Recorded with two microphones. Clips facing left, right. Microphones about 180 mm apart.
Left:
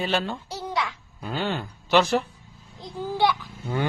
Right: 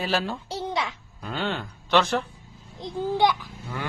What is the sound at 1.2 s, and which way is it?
A man's voice, 5° left (ahead or behind).